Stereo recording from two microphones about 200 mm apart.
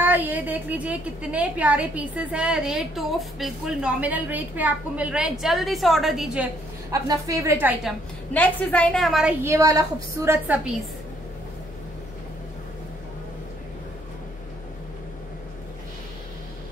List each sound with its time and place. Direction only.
0.0 s a woman's voice: 10° right (ahead or behind)
6.9 s a woman's voice: 15° right (ahead or behind)
8.3 s a woman's voice: 5° left (ahead or behind)
9.4 s a woman's voice: 15° right (ahead or behind)